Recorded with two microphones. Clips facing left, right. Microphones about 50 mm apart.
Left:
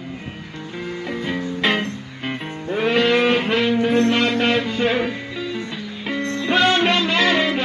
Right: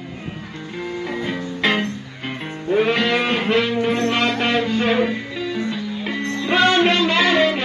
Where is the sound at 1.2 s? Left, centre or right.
Centre.